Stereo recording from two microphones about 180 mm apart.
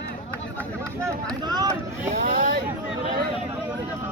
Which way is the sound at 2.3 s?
90° left.